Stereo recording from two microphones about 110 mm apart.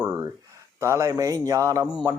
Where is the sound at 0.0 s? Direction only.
35° right (ahead or behind).